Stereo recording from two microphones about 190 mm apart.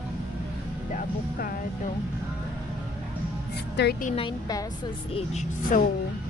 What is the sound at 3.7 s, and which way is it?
Speech, 60° left (ahead or behind).